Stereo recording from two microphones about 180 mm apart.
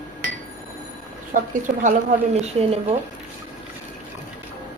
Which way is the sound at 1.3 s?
45° right (ahead or behind).